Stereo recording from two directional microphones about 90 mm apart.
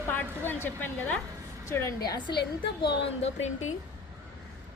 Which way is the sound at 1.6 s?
30° left (ahead or behind).